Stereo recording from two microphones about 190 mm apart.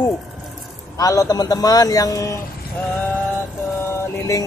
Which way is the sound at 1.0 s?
20° left (ahead or behind).